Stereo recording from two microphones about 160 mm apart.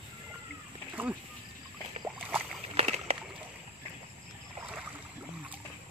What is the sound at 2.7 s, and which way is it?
Splash, 40° right (ahead or behind).